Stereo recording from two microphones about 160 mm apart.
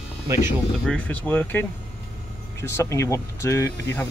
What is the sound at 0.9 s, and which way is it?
Speech, 10° left (ahead or behind).